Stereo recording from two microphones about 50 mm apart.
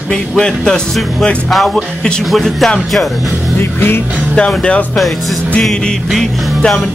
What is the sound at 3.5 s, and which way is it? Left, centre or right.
Music, left.